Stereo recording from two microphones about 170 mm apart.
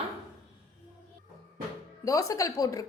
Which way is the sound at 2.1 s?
20° left (ahead or behind).